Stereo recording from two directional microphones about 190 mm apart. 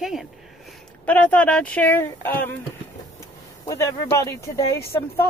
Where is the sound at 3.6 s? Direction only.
15° left (ahead or behind).